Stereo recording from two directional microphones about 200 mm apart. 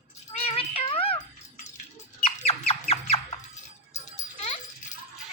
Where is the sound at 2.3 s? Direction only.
30° left (ahead or behind).